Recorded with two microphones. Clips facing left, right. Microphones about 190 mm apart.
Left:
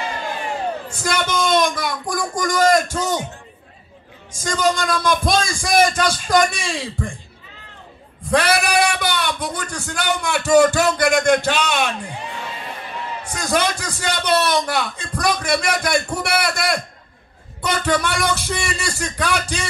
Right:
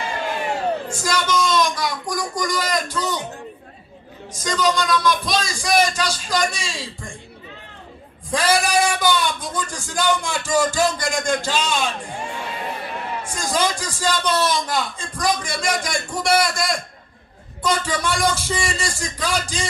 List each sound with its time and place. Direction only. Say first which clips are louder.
0.8 s a man's voice: even; 60° left (ahead or behind)
4.3 s a man's voice: left 1 dB; 50° left (ahead or behind)
8.3 s a man's voice: left 2 dB; 65° left (ahead or behind)
13.2 s a man's voice: left 2 dB; 65° left (ahead or behind)